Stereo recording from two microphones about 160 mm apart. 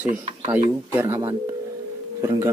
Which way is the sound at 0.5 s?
15° right (ahead or behind).